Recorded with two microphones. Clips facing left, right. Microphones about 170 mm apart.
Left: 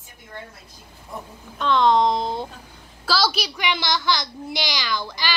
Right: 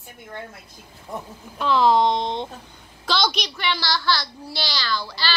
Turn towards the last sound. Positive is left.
turn(degrees=15)  # may be behind; listen again after turning